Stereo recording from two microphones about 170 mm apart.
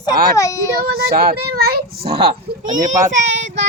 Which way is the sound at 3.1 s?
90° right.